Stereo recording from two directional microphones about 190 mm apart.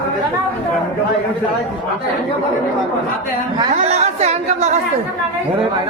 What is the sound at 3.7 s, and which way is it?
Speech, 35° right (ahead or behind).